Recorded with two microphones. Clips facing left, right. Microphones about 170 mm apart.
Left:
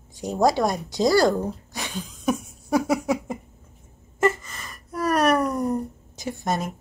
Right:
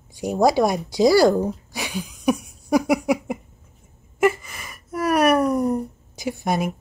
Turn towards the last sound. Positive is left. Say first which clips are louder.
# right 3 dB
turn(degrees=-10)  # may be behind; listen again after turning